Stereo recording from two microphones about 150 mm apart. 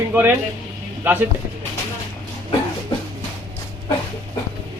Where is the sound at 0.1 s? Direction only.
10° right (ahead or behind).